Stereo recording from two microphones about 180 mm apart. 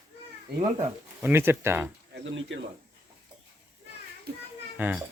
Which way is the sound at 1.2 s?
10° right (ahead or behind).